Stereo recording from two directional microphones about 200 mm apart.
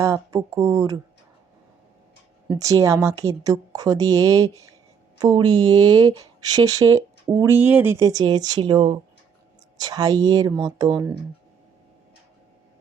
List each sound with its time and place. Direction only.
0.0 s a woman's voice: 15° right (ahead or behind)
2.5 s a woman's voice: 15° right (ahead or behind)